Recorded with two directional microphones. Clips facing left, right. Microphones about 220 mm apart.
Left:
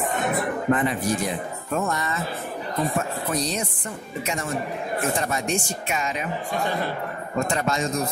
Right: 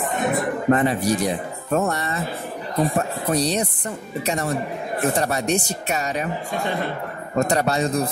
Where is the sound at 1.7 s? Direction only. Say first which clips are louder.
Right 4 dB; 35° right (ahead or behind).